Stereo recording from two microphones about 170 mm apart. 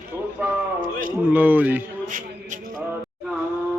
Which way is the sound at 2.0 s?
50° right (ahead or behind).